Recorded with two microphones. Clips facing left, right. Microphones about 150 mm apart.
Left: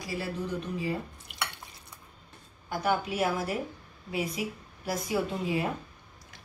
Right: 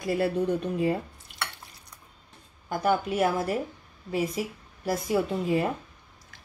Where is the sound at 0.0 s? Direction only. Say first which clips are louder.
Right 9 dB; 55° right (ahead or behind).